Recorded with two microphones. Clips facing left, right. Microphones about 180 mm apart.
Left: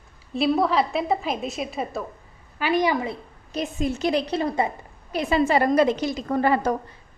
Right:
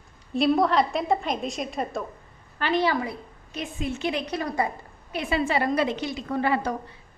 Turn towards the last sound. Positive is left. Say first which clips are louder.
# left 4 dB
turn(degrees=45)  # may be behind; listen again after turning